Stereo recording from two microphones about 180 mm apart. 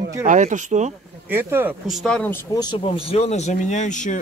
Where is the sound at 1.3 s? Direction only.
10° right (ahead or behind).